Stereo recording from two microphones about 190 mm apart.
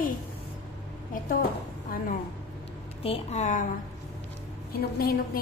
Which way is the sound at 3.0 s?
35° left (ahead or behind).